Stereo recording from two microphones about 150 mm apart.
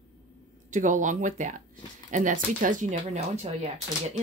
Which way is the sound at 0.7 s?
55° right (ahead or behind).